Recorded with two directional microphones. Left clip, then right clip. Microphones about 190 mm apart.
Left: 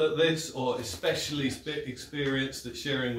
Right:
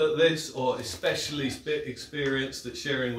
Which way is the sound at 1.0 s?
10° right (ahead or behind).